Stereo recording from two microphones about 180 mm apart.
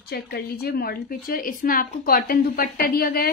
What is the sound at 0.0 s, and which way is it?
A woman's voice, 55° left (ahead or behind).